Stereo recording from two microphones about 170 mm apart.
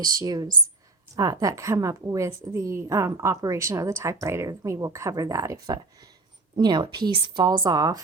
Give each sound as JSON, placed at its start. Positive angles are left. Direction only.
{"t": 0.0, "sound": "a woman's voice", "side_deg": -25}